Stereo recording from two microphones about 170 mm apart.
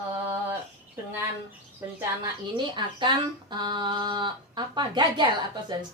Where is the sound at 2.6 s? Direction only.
25° right (ahead or behind).